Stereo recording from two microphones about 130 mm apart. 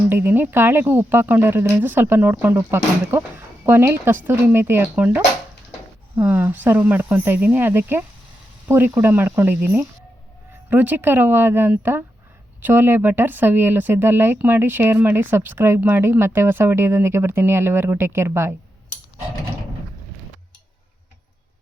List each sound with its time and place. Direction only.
0.1 s speech: 15° right (ahead or behind)